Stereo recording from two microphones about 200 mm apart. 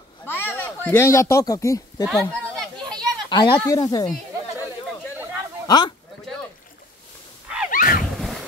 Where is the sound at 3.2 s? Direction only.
20° left (ahead or behind).